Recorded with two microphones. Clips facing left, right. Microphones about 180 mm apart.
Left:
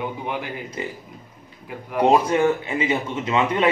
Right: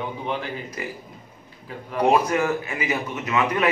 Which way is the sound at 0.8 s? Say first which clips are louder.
Left 4 dB; 25° left (ahead or behind).